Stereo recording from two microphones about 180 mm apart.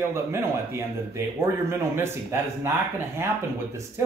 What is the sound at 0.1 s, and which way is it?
Speech, 15° right (ahead or behind).